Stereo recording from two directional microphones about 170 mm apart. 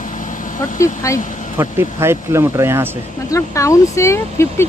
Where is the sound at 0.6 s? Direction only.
20° left (ahead or behind).